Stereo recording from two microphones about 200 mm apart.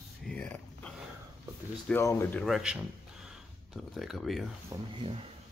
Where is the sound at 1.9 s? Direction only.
15° left (ahead or behind).